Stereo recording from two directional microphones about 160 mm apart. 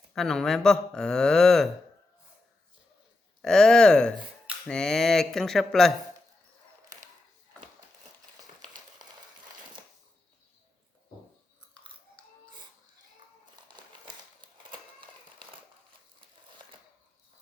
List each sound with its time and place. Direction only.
0.1 s speech: 5° left (ahead or behind)
3.4 s speech: 5° left (ahead or behind)
13.4 s crumpling: 30° right (ahead or behind)